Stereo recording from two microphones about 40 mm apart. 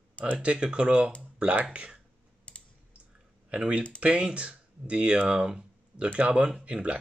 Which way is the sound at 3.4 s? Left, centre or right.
Right.